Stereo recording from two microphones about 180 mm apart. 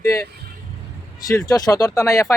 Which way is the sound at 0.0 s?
15° left (ahead or behind).